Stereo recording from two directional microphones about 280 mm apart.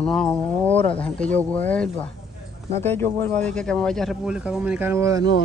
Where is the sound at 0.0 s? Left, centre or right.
Centre.